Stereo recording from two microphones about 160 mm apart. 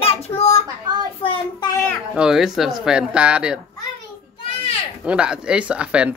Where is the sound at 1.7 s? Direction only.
15° left (ahead or behind).